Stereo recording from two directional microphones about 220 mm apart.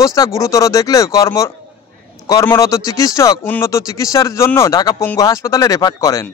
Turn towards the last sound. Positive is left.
turn(degrees=15)  # may be behind; listen again after turning